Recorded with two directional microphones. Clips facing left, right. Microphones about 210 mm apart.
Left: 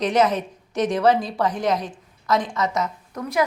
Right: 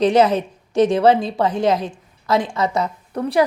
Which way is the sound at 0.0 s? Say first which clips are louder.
Right 5 dB; 30° right (ahead or behind).